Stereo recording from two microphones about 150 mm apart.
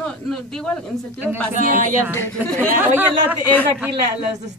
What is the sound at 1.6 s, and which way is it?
Speech, 60° right (ahead or behind).